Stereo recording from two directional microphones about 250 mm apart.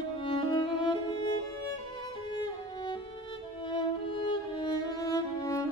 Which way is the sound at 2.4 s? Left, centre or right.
Centre.